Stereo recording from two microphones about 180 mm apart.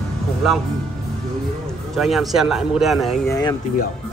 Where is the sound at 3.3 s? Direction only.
20° left (ahead or behind).